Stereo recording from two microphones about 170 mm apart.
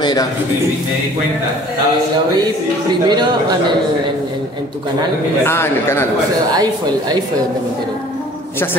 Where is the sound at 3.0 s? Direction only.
25° right (ahead or behind).